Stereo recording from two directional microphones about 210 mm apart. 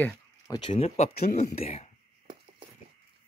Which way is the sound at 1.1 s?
45° left (ahead or behind).